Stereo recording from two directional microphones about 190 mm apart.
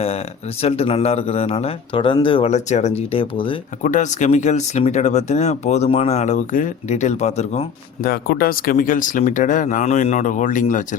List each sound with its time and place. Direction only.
0.6 s speech: 35° left (ahead or behind)
3.8 s speech: 40° left (ahead or behind)
8.0 s speech: 50° left (ahead or behind)